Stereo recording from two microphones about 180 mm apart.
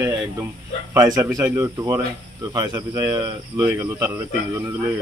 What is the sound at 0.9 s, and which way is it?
Speech, 20° right (ahead or behind).